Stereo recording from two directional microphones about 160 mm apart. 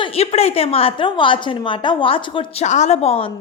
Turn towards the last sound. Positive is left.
turn(degrees=40)  # may be behind; listen again after turning